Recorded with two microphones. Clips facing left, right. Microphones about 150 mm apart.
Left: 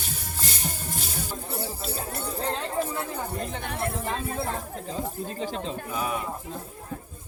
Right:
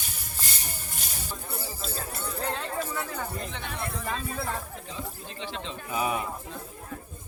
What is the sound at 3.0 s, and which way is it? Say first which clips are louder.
Chatter: left 2 dB; 25° left (ahead or behind).